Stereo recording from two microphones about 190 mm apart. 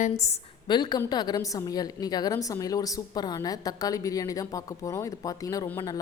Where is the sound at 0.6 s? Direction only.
25° left (ahead or behind).